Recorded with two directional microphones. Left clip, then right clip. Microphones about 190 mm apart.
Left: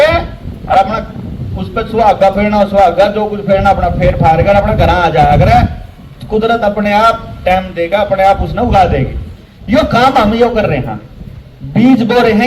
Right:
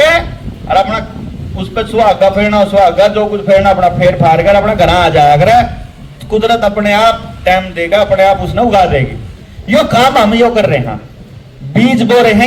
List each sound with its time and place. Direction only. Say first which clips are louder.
0.7 s honk: left 1 dB; 40° right (ahead or behind)
1.5 s a man's voice: right 2 dB; 40° right (ahead or behind)